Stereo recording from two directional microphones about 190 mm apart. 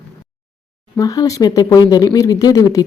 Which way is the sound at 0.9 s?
20° left (ahead or behind).